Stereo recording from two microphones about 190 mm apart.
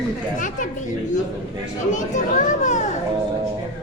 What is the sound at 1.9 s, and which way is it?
Speech, 40° left (ahead or behind).